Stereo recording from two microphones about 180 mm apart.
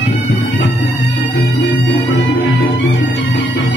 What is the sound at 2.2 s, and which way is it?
Music, 90° left.